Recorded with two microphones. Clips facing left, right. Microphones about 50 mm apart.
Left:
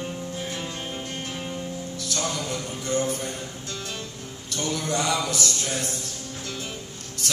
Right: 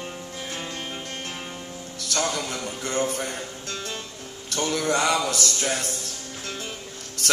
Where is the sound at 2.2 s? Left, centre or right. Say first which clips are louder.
Right 3 dB; right.